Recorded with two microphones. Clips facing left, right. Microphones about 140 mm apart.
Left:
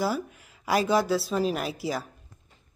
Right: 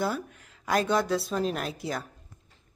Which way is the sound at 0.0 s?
5° left (ahead or behind).